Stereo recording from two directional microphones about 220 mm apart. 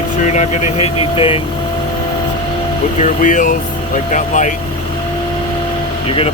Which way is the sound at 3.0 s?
35° left (ahead or behind).